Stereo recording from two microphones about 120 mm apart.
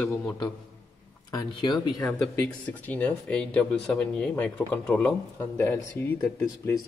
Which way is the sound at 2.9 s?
10° left (ahead or behind).